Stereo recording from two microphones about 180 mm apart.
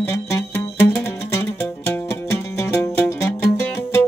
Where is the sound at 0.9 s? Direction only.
15° left (ahead or behind).